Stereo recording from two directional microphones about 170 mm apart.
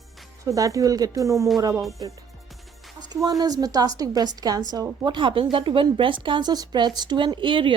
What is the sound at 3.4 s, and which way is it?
Speech, 20° right (ahead or behind).